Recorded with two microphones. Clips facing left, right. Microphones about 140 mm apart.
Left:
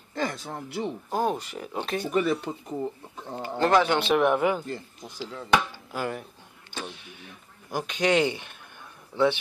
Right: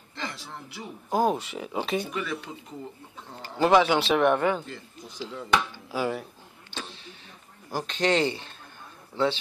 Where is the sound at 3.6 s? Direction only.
5° right (ahead or behind).